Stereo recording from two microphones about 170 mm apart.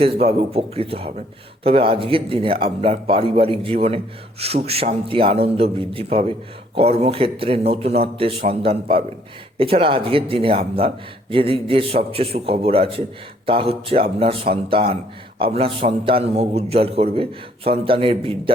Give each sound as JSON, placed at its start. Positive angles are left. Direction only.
{"t": 0.0, "sound": "a man's voice", "side_deg": -35}